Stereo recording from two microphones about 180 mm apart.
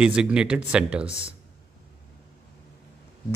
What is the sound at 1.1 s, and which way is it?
Speech, 35° left (ahead or behind).